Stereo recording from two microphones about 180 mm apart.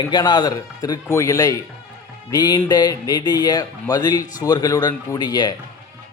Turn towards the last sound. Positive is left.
turn(degrees=25)  # may be behind; listen again after turning